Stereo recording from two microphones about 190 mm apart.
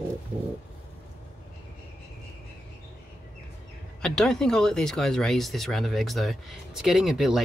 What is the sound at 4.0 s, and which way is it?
Speech, 5° left (ahead or behind).